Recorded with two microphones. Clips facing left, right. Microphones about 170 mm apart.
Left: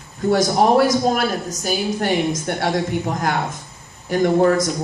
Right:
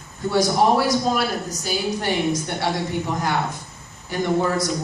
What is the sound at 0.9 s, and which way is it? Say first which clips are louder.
Speech: left 3 dB; 45° left (ahead or behind).